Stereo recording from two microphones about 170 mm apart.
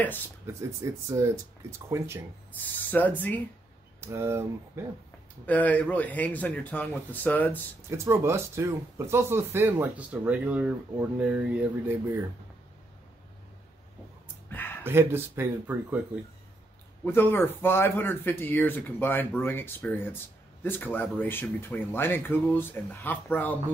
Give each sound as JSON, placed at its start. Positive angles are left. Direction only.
{"t": 0.5, "sound": "speech", "side_deg": -15}
{"t": 2.6, "sound": "speech", "side_deg": 10}
{"t": 4.0, "sound": "speech", "side_deg": -15}
{"t": 5.5, "sound": "speech", "side_deg": 10}
{"t": 8.0, "sound": "speech", "side_deg": -15}
{"t": 14.2, "sound": "a sound", "side_deg": 10}
{"t": 14.8, "sound": "speech", "side_deg": -15}
{"t": 17.0, "sound": "speech", "side_deg": 10}